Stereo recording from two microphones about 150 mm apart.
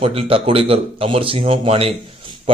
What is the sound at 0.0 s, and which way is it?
A man's voice, 40° right (ahead or behind).